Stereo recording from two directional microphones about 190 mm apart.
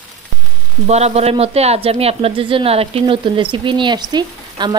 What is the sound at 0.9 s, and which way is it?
A woman's voice, 35° right (ahead or behind).